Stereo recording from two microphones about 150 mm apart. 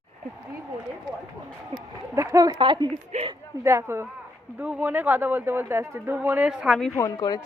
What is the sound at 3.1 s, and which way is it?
Speech, 45° right (ahead or behind).